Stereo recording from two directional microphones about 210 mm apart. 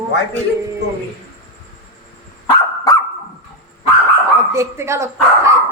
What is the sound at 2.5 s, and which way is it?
Dog, 15° left (ahead or behind).